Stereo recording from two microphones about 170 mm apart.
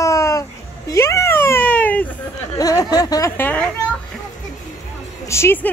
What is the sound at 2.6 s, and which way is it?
Speech, 20° left (ahead or behind).